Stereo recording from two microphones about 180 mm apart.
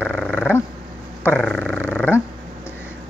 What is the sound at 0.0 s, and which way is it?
Dog, centre (ahead or behind).